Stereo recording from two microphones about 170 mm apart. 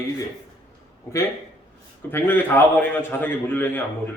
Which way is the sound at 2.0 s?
15° left (ahead or behind).